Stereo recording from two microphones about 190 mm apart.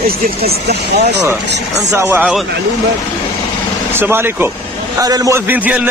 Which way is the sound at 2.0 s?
10° right (ahead or behind).